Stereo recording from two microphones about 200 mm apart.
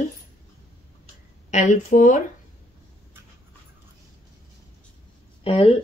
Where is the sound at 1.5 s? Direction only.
40° left (ahead or behind).